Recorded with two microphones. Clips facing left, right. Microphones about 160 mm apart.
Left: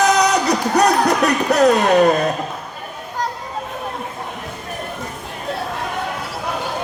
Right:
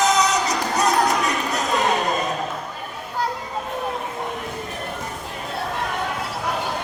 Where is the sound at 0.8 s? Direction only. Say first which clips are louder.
Left 4 dB; 70° left (ahead or behind).